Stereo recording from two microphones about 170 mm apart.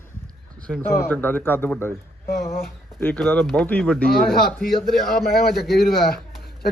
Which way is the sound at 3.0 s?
10° left (ahead or behind).